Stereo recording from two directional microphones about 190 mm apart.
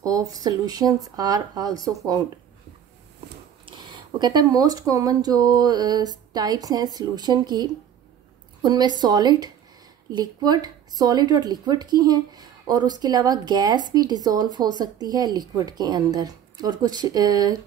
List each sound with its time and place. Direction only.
0.0 s speech: 20° right (ahead or behind)
3.6 s speech: 25° right (ahead or behind)